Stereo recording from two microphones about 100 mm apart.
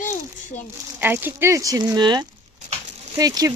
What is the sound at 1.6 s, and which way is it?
Speech, 35° right (ahead or behind).